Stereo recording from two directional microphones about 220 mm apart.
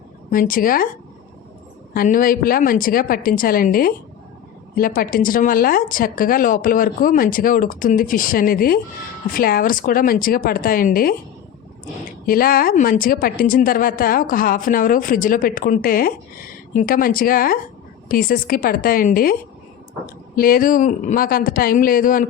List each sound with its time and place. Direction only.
0.3 s speech: 40° left (ahead or behind)
1.9 s speech: 40° left (ahead or behind)
12.2 s speech: 40° left (ahead or behind)